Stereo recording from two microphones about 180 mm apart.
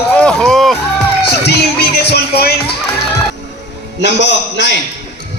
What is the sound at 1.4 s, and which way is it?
Music, 65° left (ahead or behind).